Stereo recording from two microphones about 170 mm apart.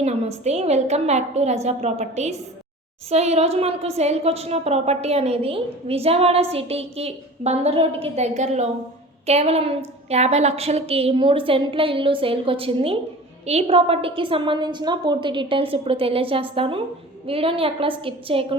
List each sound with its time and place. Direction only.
0.0 s a woman's voice: 40° right (ahead or behind)